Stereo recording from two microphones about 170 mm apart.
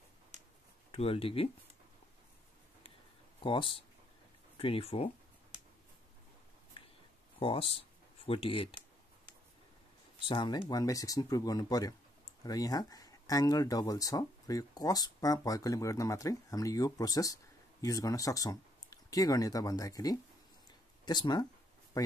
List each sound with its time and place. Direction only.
0.9 s speech: 35° left (ahead or behind)
3.3 s speech: 30° left (ahead or behind)
7.3 s speech: 35° left (ahead or behind)
10.2 s speech: 25° left (ahead or behind)